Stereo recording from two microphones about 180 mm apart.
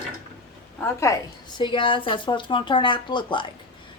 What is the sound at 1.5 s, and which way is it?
A woman's voice, 25° left (ahead or behind).